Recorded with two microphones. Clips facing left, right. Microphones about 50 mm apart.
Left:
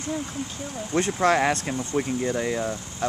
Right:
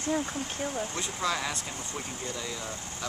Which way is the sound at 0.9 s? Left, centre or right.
Left.